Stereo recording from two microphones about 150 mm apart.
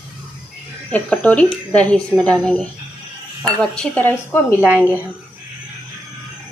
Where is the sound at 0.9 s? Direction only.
10° left (ahead or behind).